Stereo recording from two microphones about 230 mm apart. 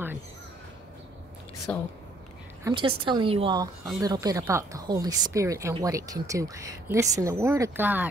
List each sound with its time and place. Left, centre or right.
1.7 s speech: centre
2.6 s a woman's voice: right